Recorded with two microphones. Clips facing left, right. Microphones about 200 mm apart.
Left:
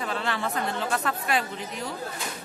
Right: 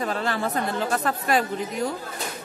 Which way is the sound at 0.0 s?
40° right (ahead or behind).